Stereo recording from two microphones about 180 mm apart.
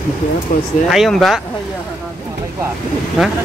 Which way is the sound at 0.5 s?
50° left (ahead or behind).